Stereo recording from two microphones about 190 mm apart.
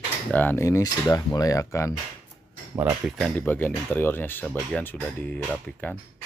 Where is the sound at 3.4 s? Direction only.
10° left (ahead or behind).